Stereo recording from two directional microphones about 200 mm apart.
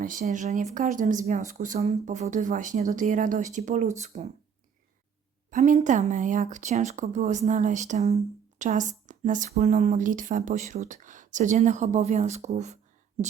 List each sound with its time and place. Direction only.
0.0 s speech: 40° right (ahead or behind)
5.5 s speech: 40° right (ahead or behind)